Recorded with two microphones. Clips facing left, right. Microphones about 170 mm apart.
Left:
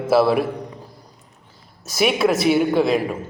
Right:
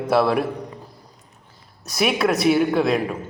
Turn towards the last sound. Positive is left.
turn(degrees=0)  # may be behind; listen again after turning